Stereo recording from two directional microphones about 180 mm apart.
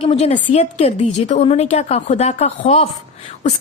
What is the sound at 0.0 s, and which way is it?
A woman's voice, 35° left (ahead or behind).